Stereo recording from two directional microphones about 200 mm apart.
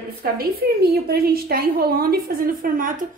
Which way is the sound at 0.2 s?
50° right (ahead or behind).